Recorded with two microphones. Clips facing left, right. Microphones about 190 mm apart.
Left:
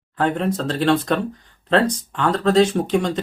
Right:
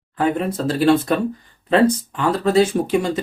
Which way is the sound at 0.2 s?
5° right (ahead or behind).